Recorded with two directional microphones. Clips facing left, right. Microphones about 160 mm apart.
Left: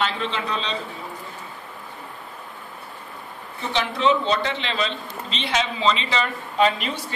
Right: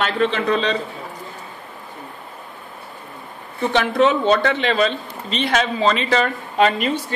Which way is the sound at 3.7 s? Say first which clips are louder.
Right 4 dB; 55° right (ahead or behind).